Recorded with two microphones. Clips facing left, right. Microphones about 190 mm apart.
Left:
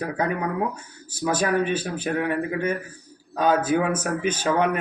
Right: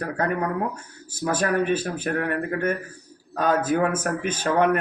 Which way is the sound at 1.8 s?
5° left (ahead or behind).